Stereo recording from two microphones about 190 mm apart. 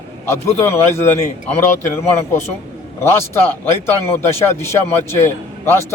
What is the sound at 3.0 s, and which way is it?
A man's voice, 15° left (ahead or behind).